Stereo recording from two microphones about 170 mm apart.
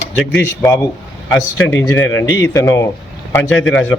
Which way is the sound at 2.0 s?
15° left (ahead or behind).